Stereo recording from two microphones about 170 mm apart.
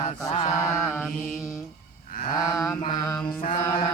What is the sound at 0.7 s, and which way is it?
Mantra, centre (ahead or behind).